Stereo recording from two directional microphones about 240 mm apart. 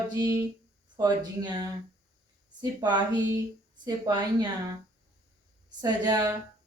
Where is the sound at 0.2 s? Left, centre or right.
Centre.